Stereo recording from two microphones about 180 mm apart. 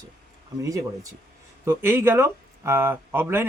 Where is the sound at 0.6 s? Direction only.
20° right (ahead or behind).